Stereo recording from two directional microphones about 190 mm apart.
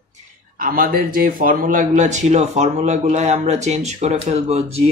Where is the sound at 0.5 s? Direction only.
50° right (ahead or behind).